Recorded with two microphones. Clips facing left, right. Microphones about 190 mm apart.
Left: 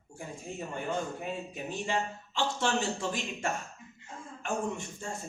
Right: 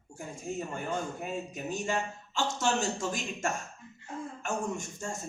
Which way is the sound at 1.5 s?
45° right (ahead or behind).